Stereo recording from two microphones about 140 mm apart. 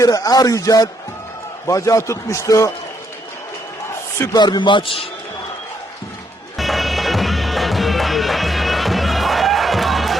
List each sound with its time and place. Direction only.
0.0 s a man's voice: 25° left (ahead or behind)
4.2 s a man's voice: 25° left (ahead or behind)
6.6 s music: centre (ahead or behind)